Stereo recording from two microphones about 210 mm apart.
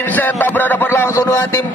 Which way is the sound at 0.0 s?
10° left (ahead or behind).